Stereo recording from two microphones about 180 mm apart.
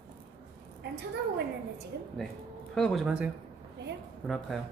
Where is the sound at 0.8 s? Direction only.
65° right (ahead or behind).